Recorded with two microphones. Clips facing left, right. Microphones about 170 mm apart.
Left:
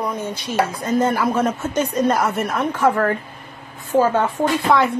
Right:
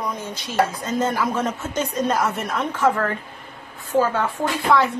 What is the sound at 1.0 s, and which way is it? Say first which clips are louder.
Speech: left 3 dB; 10° left (ahead or behind).